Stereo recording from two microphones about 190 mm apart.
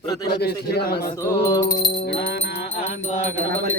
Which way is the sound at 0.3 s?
55° left (ahead or behind).